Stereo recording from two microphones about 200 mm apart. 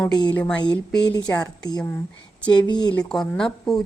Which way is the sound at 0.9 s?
60° left (ahead or behind).